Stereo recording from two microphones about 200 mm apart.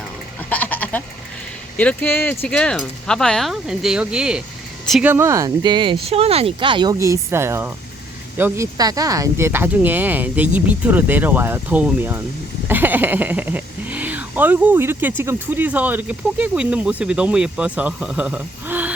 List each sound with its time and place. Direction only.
0.5 s goat: 10° left (ahead or behind)
1.7 s speech: 5° left (ahead or behind); by 18.9 s 10° right (ahead or behind)